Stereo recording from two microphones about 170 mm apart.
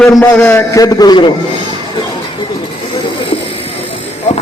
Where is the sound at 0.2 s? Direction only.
15° left (ahead or behind).